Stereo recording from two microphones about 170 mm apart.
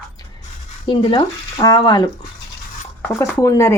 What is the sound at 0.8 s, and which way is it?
Speech, 30° left (ahead or behind).